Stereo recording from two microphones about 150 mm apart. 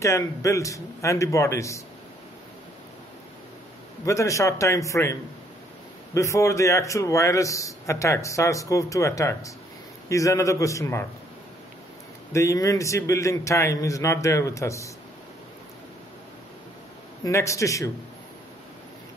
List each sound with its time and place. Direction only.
0.0 s a man's voice: 20° left (ahead or behind)
4.0 s a man's voice: 20° left (ahead or behind)
6.1 s a man's voice: 20° left (ahead or behind)
12.3 s a man's voice: 20° left (ahead or behind)
17.2 s a man's voice: 20° left (ahead or behind)